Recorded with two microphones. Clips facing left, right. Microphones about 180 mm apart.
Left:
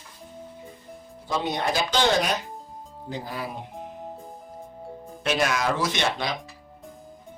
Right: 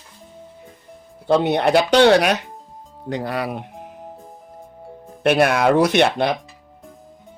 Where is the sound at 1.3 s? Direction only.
65° right (ahead or behind).